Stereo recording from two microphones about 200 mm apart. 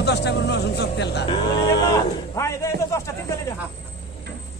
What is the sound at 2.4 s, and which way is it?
Speech, 15° left (ahead or behind).